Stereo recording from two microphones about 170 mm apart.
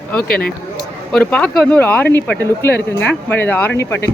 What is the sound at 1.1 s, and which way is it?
Speech, 5° left (ahead or behind).